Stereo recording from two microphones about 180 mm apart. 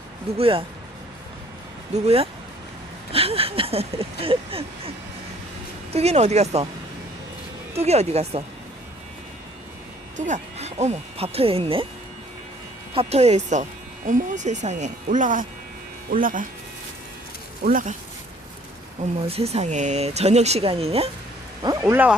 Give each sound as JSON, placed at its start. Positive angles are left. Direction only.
{"t": 0.3, "sound": "speech", "side_deg": -30}
{"t": 2.0, "sound": "speech", "side_deg": -35}
{"t": 5.9, "sound": "speech", "side_deg": -35}
{"t": 7.8, "sound": "speech", "side_deg": -35}
{"t": 10.2, "sound": "speech", "side_deg": -45}
{"t": 12.9, "sound": "speech", "side_deg": -35}
{"t": 17.6, "sound": "speech", "side_deg": -50}
{"t": 19.3, "sound": "speech", "side_deg": -35}
{"t": 21.6, "sound": "speech", "side_deg": -20}